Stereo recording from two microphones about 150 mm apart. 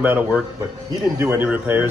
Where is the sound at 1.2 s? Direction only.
15° right (ahead or behind).